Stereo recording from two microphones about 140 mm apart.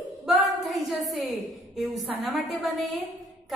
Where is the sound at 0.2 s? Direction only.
Centre (ahead or behind).